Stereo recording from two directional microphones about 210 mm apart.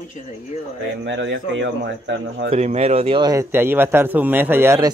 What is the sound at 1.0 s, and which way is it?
Speech, 60° right (ahead or behind).